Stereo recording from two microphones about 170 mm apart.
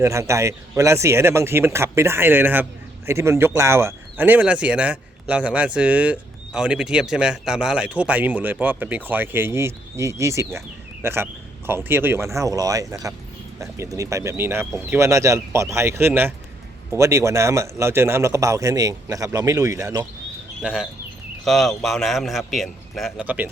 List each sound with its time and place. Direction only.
0.0 s speech: 15° right (ahead or behind)
20.6 s a man's voice: 5° right (ahead or behind)